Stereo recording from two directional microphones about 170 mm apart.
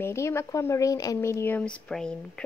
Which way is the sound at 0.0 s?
15° left (ahead or behind).